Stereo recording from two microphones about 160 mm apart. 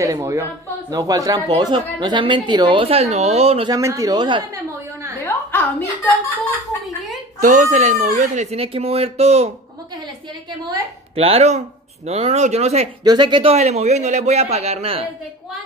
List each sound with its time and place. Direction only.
0.0 s a woman's voice: 20° right (ahead or behind); by 3.7 s 40° right (ahead or behind)
3.7 s speech: 20° right (ahead or behind)
5.2 s a sound: 10° left (ahead or behind)
7.4 s speech: 50° right (ahead or behind)
11.1 s a woman's voice: 40° right (ahead or behind)
13.0 s a woman's voice: 25° right (ahead or behind)